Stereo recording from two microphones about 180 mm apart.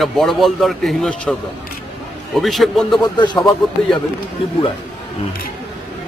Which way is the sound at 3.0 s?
25° left (ahead or behind).